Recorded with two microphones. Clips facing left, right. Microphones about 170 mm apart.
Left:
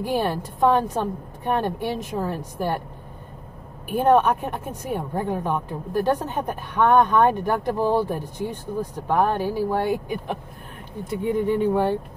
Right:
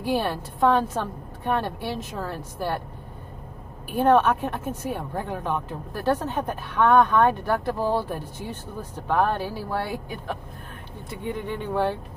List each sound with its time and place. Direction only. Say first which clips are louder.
0.0 s speech: left 1 dB; 15° left (ahead or behind)
3.9 s speech: left 1 dB; 10° left (ahead or behind)
9.4 s speech: left 7 dB; 45° left (ahead or behind)
11.3 s speech: left 7 dB; 10° left (ahead or behind)